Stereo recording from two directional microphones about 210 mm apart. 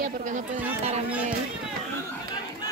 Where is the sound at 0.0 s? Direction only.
35° right (ahead or behind).